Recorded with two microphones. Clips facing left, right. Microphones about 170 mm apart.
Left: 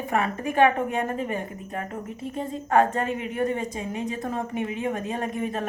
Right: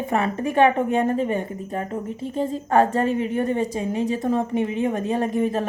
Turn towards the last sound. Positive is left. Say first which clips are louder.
# right 6 dB
turn(degrees=-35)  # may be behind; listen again after turning